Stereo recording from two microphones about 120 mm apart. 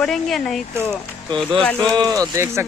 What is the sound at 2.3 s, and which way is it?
Speech, 20° right (ahead or behind).